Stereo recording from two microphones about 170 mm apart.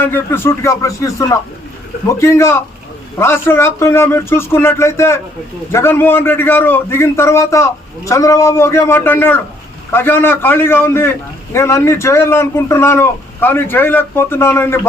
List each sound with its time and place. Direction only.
0.0 s a man's voice: 15° left (ahead or behind)